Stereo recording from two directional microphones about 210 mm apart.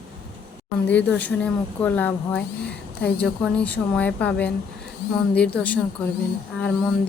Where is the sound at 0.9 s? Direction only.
5° left (ahead or behind).